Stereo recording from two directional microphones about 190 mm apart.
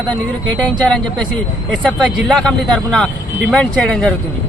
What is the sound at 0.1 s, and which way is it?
Speech, 5° left (ahead or behind).